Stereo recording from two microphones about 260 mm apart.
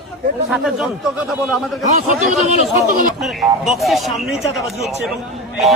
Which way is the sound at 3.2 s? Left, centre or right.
Centre.